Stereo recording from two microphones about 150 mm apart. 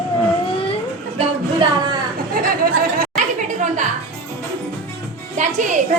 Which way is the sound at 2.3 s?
75° right (ahead or behind).